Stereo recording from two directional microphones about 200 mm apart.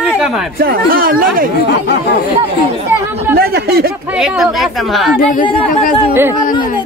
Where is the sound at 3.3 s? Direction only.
50° right (ahead or behind).